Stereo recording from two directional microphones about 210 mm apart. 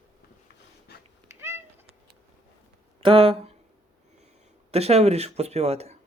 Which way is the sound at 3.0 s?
25° right (ahead or behind).